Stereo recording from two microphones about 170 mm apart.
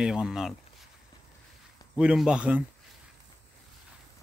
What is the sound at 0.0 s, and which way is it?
Speech, 5° right (ahead or behind).